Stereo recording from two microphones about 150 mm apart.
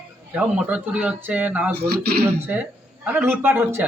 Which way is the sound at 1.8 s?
90° right.